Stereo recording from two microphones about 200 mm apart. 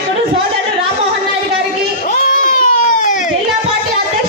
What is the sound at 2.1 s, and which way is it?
Baby cry, 40° left (ahead or behind).